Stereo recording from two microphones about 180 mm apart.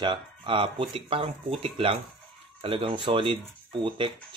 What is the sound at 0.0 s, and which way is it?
Speech, 25° right (ahead or behind).